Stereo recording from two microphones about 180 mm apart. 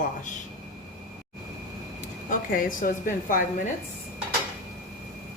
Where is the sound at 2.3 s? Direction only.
50° left (ahead or behind).